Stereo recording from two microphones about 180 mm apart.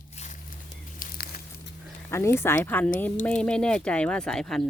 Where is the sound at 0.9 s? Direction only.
60° left (ahead or behind).